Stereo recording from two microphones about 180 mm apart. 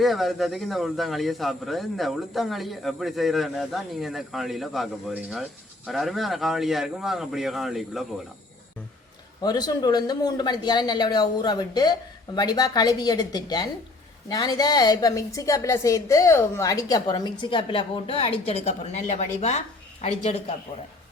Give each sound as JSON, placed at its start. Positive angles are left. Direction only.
{"t": 0.0, "sound": "speech", "side_deg": 0}
{"t": 9.4, "sound": "speech", "side_deg": 20}